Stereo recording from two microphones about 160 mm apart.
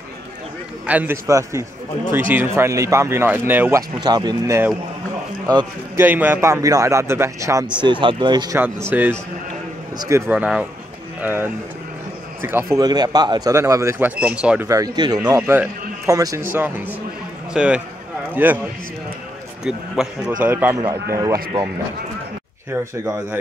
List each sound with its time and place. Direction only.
0.8 s speech: 10° right (ahead or behind)
4.0 s a man's voice: 25° right (ahead or behind)
5.9 s speech: 10° right (ahead or behind)
7.8 s a man's voice: 30° right (ahead or behind)
8.5 s speech: 10° right (ahead or behind)
12.7 s a man's voice: 25° right (ahead or behind); by 14.7 s 5° right (ahead or behind)
14.7 s a man's voice: 25° right (ahead or behind)
19.6 s a man's voice: 5° right (ahead or behind)
21.2 s a man's voice: 20° right (ahead or behind)
23.0 s a man's voice: 20° right (ahead or behind)